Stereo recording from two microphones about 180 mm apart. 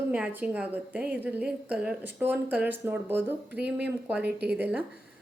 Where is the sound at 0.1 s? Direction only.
10° right (ahead or behind).